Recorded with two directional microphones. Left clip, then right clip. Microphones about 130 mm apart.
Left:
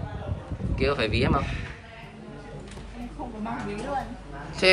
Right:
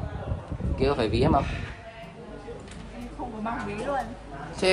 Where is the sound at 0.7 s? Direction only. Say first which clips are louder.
Even; 30° right (ahead or behind).